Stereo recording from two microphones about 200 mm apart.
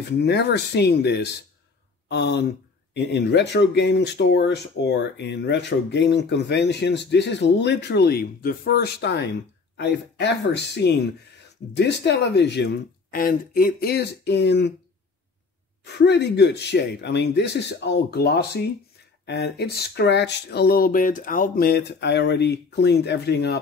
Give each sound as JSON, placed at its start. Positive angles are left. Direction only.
{"t": 0.2, "sound": "speech", "side_deg": 55}
{"t": 15.8, "sound": "speech", "side_deg": 60}